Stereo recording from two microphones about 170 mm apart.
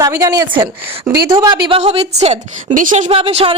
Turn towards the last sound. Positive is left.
turn(degrees=-35)  # may be behind; listen again after turning